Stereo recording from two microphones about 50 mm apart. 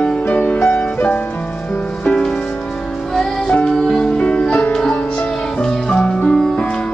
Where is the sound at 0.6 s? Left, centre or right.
Left.